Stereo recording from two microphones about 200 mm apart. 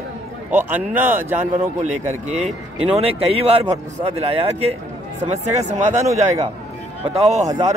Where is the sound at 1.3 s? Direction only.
35° right (ahead or behind).